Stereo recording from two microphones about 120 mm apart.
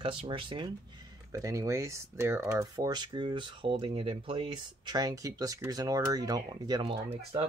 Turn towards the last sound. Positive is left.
turn(degrees=-50)  # may be behind; listen again after turning